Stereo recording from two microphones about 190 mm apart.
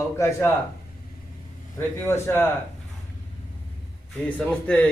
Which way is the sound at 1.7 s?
10° left (ahead or behind).